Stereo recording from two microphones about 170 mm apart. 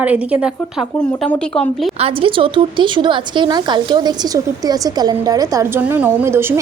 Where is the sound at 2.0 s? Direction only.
35° right (ahead or behind).